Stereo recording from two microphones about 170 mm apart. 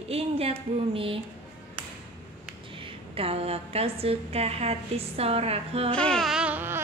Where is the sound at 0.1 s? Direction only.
35° right (ahead or behind).